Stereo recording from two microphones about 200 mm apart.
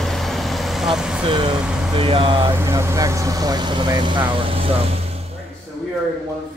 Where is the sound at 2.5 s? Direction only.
15° right (ahead or behind); by 5.1 s 30° right (ahead or behind).